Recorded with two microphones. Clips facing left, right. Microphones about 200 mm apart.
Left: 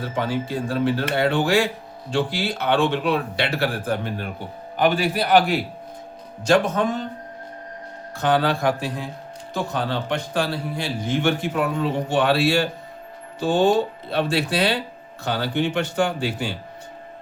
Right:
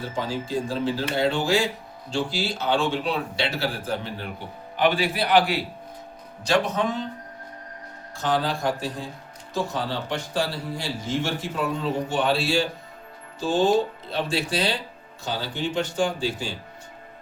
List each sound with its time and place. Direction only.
0.1 s a man's voice: 60° left (ahead or behind)
8.1 s speech: 60° left (ahead or behind)